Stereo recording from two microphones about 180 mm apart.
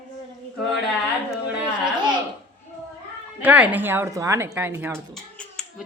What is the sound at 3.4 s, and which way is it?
A woman's voice, 10° right (ahead or behind).